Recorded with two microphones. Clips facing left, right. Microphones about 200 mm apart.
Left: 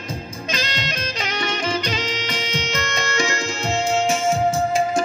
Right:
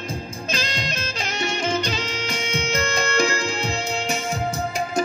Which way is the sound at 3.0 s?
55° right (ahead or behind).